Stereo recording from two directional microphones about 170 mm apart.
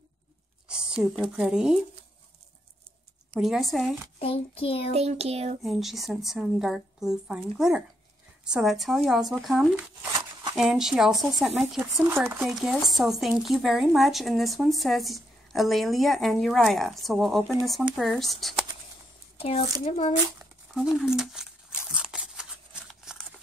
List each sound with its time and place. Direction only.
0.7 s a sound: 5° right (ahead or behind)
1.3 s speech: 5° right (ahead or behind)
3.3 s speech: centre (ahead or behind)
4.2 s speech: 35° left (ahead or behind)
4.9 s a sound: 40° right (ahead or behind)
5.6 s speech: centre (ahead or behind)
11.8 s speech: 15° right (ahead or behind)
19.3 s speech: 35° left (ahead or behind)
20.7 s a sound: 5° right (ahead or behind)